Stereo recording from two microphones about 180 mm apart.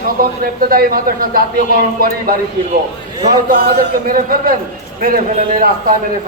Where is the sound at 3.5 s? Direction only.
60° right (ahead or behind).